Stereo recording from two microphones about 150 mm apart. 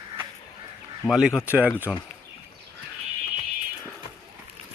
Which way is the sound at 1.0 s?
5° right (ahead or behind).